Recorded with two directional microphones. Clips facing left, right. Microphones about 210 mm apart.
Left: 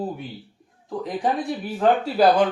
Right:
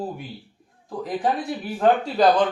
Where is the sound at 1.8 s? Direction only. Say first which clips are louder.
Even; 5° left (ahead or behind).